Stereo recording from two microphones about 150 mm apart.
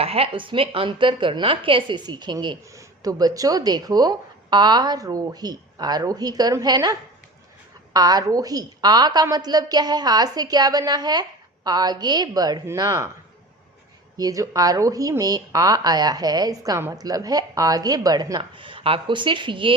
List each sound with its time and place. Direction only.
0.0 s a woman's voice: 40° right (ahead or behind)
7.9 s a woman's voice: 25° right (ahead or behind)
14.2 s a woman's voice: 25° right (ahead or behind)